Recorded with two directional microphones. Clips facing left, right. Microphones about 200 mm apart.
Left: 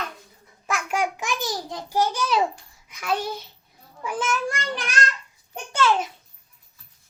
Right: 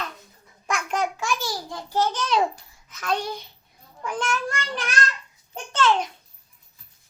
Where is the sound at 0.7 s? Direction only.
10° left (ahead or behind).